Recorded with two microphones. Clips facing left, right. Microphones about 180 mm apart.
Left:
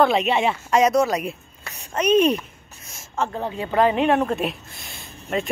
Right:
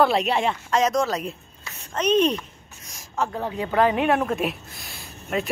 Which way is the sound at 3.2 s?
Centre (ahead or behind).